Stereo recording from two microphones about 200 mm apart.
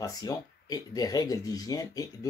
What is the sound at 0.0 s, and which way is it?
Speech, 20° left (ahead or behind).